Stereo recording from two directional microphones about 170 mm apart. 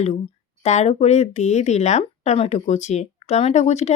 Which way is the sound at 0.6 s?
40° left (ahead or behind).